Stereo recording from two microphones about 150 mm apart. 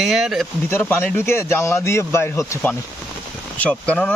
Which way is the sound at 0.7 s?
15° left (ahead or behind).